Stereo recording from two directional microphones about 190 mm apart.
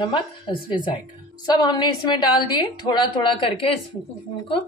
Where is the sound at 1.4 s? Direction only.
20° left (ahead or behind).